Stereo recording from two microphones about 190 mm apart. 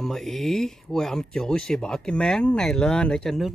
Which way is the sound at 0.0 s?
Centre (ahead or behind).